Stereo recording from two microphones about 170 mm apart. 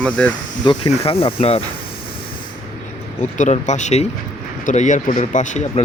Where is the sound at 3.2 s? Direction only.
45° left (ahead or behind).